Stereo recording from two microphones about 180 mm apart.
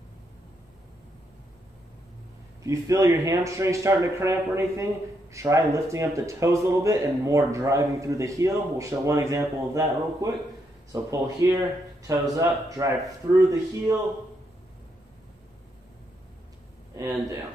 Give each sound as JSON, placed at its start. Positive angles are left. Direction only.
{"t": 2.6, "sound": "speech", "side_deg": -15}
{"t": 16.9, "sound": "speech", "side_deg": -20}